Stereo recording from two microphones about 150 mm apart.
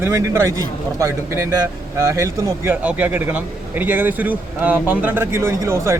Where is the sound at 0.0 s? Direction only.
20° right (ahead or behind).